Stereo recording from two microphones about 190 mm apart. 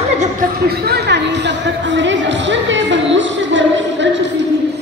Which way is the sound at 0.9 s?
65° right (ahead or behind).